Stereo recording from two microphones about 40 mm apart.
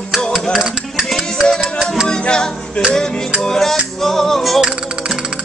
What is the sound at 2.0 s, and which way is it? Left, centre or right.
Music, left.